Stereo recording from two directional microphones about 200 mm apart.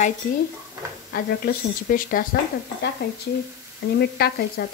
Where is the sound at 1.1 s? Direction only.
45° left (ahead or behind).